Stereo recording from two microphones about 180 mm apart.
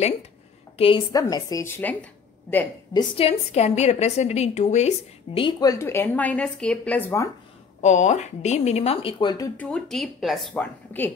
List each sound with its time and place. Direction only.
0.7 s a woman's voice: 30° left (ahead or behind)
1.2 s speech: 15° left (ahead or behind)
2.9 s a woman's voice: 25° left (ahead or behind)
7.8 s speech: 40° left (ahead or behind); by 9.5 s 25° left (ahead or behind)
9.6 s a woman's voice: 5° left (ahead or behind)